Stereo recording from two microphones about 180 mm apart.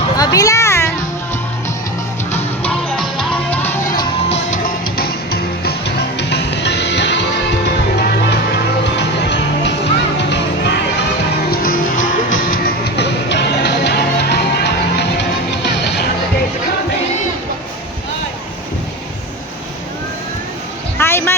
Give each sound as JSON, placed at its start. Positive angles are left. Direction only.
{"t": 0.2, "sound": "a sound", "side_deg": 20}
{"t": 2.3, "sound": "music", "side_deg": 5}
{"t": 4.4, "sound": "music", "side_deg": 50}
{"t": 8.3, "sound": "music", "side_deg": 70}
{"t": 11.5, "sound": "music", "side_deg": 55}
{"t": 11.9, "sound": "music", "side_deg": 90}
{"t": 12.4, "sound": "music", "side_deg": 55}
{"t": 21.0, "sound": "a sound", "side_deg": 15}